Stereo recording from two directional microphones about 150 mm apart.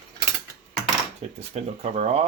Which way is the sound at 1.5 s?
45° right (ahead or behind).